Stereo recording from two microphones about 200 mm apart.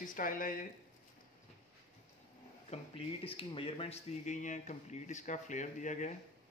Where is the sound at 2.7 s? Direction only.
25° left (ahead or behind).